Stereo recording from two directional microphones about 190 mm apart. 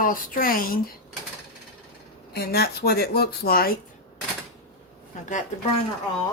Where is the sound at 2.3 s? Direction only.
55° left (ahead or behind).